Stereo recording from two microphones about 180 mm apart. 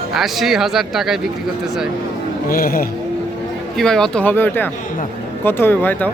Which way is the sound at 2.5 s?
55° left (ahead or behind).